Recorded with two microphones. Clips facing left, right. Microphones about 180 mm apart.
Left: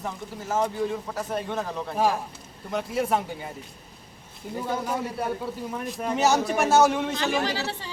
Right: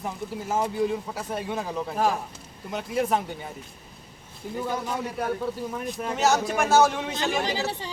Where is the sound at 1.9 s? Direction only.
5° left (ahead or behind).